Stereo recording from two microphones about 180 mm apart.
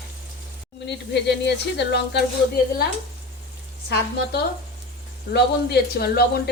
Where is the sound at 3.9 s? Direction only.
65° left (ahead or behind).